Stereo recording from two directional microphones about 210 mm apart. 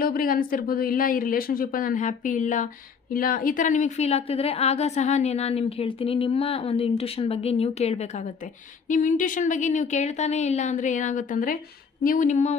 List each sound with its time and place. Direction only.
0.0 s speech: 45° left (ahead or behind)